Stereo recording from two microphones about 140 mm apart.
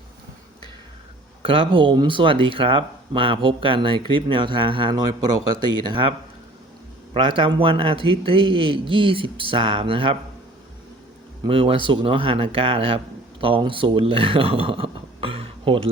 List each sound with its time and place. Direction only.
1.4 s speech: 40° right (ahead or behind)
11.4 s speech: 40° right (ahead or behind)